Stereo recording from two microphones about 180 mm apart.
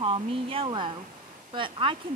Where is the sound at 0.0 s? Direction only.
30° right (ahead or behind).